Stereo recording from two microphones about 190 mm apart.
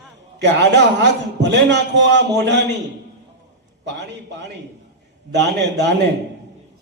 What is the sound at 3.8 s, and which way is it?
Speech, 70° right (ahead or behind).